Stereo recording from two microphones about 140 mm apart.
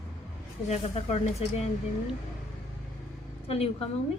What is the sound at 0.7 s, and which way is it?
Speech, 55° left (ahead or behind).